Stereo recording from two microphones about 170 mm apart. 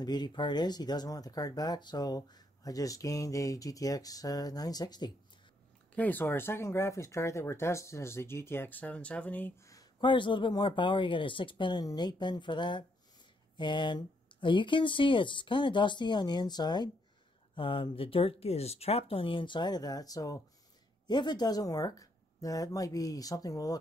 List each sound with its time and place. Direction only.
0.0 s speech: 25° left (ahead or behind)
5.9 s speech: 10° left (ahead or behind)